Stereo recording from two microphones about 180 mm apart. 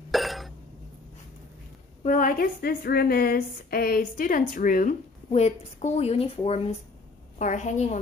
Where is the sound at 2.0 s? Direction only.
50° left (ahead or behind).